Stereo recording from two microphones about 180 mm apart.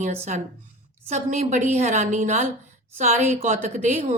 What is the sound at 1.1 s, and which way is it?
A woman's voice, 40° right (ahead or behind).